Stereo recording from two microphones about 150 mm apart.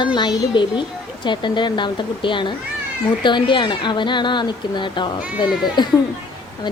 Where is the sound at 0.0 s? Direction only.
30° left (ahead or behind).